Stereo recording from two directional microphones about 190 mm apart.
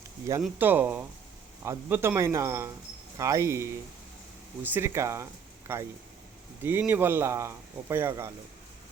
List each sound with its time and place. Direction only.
0.4 s speech: 10° right (ahead or behind)